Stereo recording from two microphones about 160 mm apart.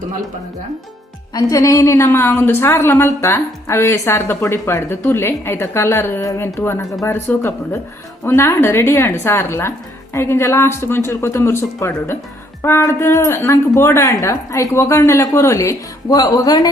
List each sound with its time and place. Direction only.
1.3 s a woman's voice: 20° left (ahead or behind)